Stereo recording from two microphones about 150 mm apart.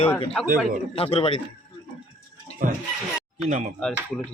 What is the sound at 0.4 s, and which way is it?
Speech, 5° left (ahead or behind).